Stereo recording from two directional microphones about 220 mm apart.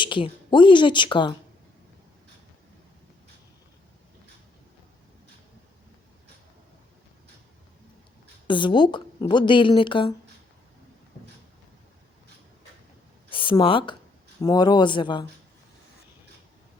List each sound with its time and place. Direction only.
0.0 s a woman's voice: 20° left (ahead or behind)
8.4 s a woman's voice: 20° left (ahead or behind)
13.3 s a woman's voice: 25° left (ahead or behind)